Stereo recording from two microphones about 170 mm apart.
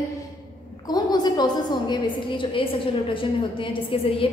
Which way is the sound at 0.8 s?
25° left (ahead or behind).